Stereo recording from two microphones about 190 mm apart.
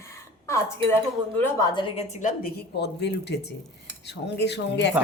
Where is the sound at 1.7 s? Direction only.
30° left (ahead or behind).